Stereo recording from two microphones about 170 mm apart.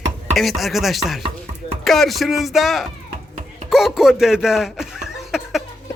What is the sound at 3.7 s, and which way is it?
Chuckle, 5° right (ahead or behind).